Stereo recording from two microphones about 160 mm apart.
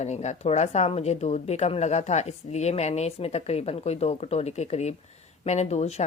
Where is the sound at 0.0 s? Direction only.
45° left (ahead or behind).